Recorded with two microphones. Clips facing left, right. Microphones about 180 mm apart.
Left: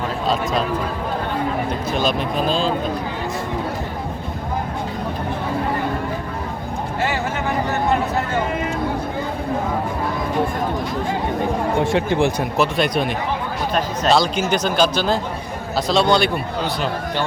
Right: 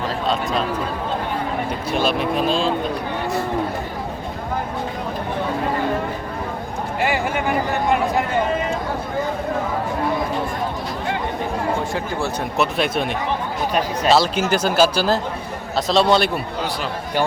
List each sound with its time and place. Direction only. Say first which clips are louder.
1.9 s speech: right 2 dB; 5° right (ahead or behind)
7.0 s a sound: right 2 dB; 15° right (ahead or behind)
11.9 s speech: left 6 dB; 25° left (ahead or behind)
12.5 s speech: even; centre (ahead or behind)